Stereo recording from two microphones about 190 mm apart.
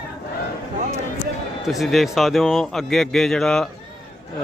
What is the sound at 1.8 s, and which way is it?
Speech, centre (ahead or behind).